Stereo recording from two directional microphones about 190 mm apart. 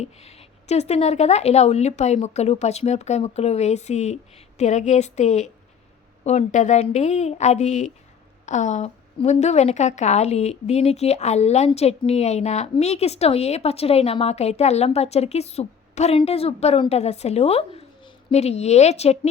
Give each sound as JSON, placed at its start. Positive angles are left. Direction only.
{"t": 0.0, "sound": "a woman's voice", "side_deg": 35}